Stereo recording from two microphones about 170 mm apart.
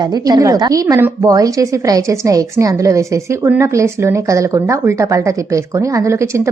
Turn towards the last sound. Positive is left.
turn(degrees=-15)  # may be behind; listen again after turning